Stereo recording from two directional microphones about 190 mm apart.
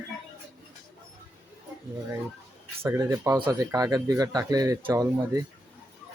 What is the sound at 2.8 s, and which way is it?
Speech, 15° right (ahead or behind).